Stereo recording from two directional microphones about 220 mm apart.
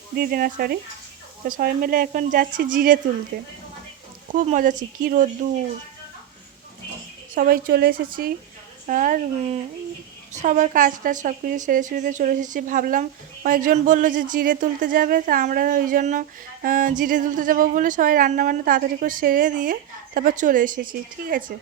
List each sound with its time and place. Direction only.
0.2 s a woman's voice: 40° right (ahead or behind)
7.3 s a woman's voice: 40° right (ahead or behind)